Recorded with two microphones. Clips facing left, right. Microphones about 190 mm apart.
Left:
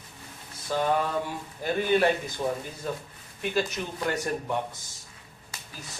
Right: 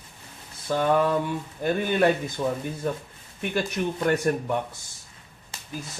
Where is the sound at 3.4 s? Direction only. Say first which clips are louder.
Right 2 dB; 55° right (ahead or behind).